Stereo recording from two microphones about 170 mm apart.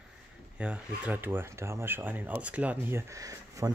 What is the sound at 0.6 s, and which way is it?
Speech, 5° right (ahead or behind).